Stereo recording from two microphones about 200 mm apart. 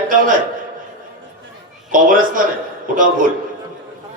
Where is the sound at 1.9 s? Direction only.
45° right (ahead or behind).